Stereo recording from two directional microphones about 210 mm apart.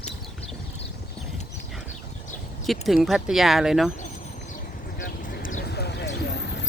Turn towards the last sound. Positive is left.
turn(degrees=55)  # may be behind; listen again after turning